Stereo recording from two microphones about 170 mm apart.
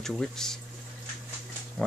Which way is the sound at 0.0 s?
5° left (ahead or behind).